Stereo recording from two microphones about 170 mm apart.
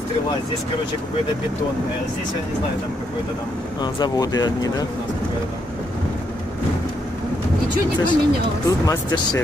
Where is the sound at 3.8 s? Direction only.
25° left (ahead or behind).